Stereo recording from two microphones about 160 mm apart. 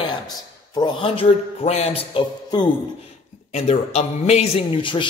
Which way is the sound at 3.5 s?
40° left (ahead or behind).